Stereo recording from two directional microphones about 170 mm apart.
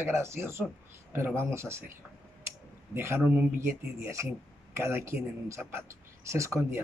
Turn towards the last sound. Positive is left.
turn(degrees=-15)  # may be behind; listen again after turning